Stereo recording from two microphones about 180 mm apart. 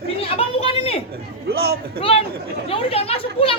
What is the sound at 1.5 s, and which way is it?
Speech, 60° right (ahead or behind).